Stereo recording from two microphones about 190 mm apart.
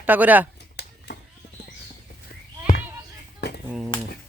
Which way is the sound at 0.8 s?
60° left (ahead or behind).